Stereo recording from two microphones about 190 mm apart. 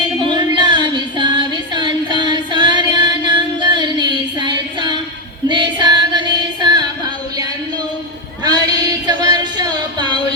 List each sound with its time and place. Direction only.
0.3 s female singing: 25° right (ahead or behind)
9.0 s music: 20° right (ahead or behind)